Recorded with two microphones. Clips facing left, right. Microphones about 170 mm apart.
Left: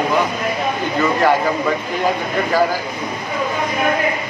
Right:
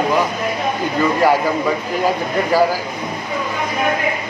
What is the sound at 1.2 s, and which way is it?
Speech, 10° right (ahead or behind).